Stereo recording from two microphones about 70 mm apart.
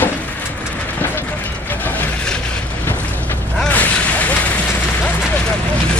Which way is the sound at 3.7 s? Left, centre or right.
Left.